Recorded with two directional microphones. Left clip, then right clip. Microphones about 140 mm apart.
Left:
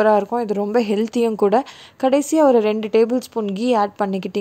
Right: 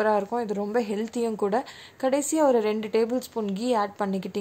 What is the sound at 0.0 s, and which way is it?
A woman's voice, 45° left (ahead or behind).